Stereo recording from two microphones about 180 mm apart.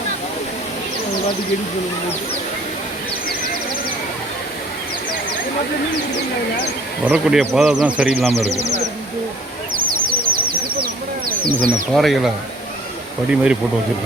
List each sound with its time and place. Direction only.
7.0 s speech: 5° right (ahead or behind)
8.3 s a man's voice: 35° right (ahead or behind)
9.7 s bird: 50° right (ahead or behind)
11.6 s speech: centre (ahead or behind)
13.3 s speech: 5° right (ahead or behind)